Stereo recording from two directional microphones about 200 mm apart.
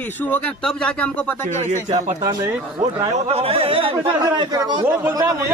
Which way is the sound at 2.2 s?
20° right (ahead or behind).